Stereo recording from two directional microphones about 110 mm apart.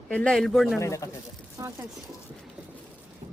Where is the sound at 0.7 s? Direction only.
25° left (ahead or behind).